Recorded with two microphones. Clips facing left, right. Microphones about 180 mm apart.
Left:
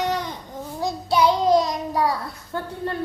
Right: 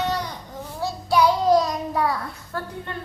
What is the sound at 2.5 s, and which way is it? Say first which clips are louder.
Speech: left 2 dB; 20° left (ahead or behind).